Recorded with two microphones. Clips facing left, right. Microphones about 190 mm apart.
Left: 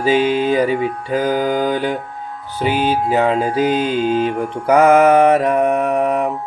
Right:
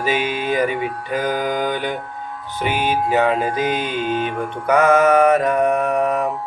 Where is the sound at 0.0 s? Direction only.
30° left (ahead or behind).